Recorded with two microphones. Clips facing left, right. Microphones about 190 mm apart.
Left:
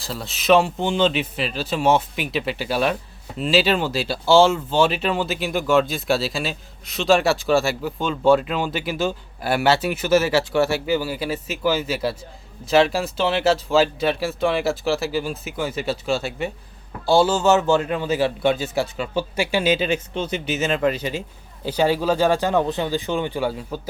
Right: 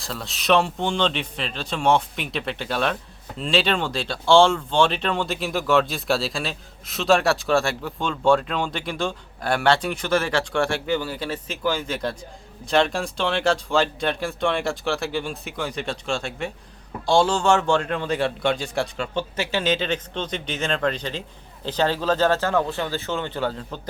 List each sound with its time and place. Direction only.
0.0 s a man's voice: centre (ahead or behind)